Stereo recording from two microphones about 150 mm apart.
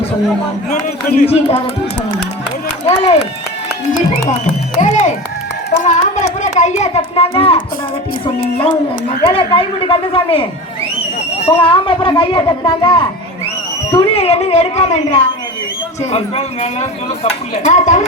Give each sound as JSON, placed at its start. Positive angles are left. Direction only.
{"t": 1.2, "sound": "speech", "side_deg": 45}
{"t": 2.8, "sound": "speech", "side_deg": 50}
{"t": 4.8, "sound": "a child's voice", "side_deg": 55}
{"t": 13.9, "sound": "speech", "side_deg": 40}
{"t": 16.1, "sound": "speech", "side_deg": 40}